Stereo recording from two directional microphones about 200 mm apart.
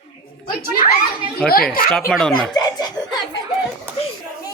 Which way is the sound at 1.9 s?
Centre (ahead or behind).